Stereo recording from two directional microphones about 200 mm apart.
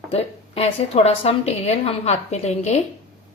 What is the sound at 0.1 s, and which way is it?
Speech, 30° left (ahead or behind).